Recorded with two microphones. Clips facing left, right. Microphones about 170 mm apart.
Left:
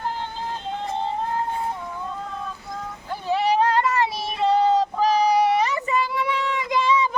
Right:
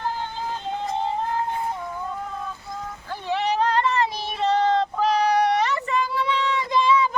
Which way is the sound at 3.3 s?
10° left (ahead or behind).